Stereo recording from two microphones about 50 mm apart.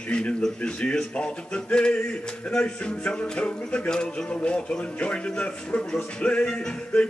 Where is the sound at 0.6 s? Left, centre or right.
Left.